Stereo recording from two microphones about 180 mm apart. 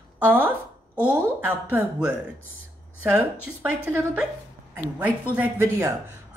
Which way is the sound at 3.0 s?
5° right (ahead or behind).